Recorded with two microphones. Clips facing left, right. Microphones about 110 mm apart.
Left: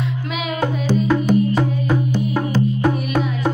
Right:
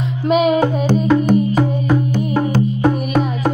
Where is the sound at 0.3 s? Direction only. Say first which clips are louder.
Right 16 dB; 45° right (ahead or behind).